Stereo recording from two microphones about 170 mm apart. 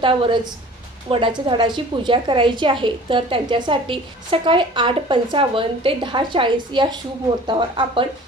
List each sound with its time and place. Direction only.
0.0 s a woman's voice: 30° right (ahead or behind)